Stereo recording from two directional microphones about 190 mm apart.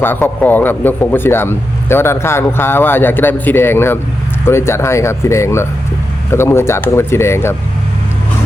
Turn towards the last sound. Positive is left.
turn(degrees=15)  # may be behind; listen again after turning